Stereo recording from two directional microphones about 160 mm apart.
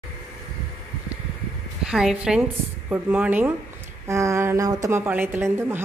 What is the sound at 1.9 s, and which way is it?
A woman's voice, 5° right (ahead or behind).